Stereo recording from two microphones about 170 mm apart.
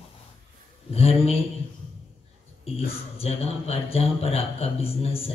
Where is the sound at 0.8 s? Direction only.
35° left (ahead or behind).